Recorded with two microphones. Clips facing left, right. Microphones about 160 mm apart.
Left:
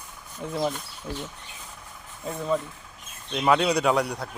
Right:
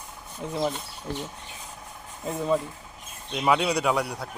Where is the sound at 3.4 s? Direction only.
5° right (ahead or behind).